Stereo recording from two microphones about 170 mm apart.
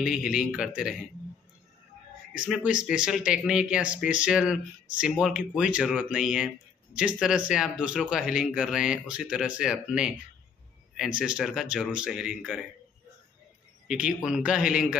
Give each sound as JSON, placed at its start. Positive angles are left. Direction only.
{"t": 0.0, "sound": "speech", "side_deg": -5}
{"t": 2.3, "sound": "speech", "side_deg": -5}
{"t": 13.8, "sound": "speech", "side_deg": -5}